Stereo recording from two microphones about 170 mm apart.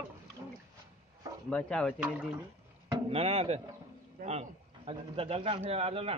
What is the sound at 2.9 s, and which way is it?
A man's voice, 35° right (ahead or behind).